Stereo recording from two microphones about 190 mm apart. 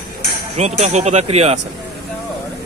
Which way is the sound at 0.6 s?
35° right (ahead or behind).